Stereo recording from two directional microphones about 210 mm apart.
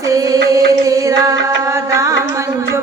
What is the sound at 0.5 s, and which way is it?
Chant, 15° right (ahead or behind).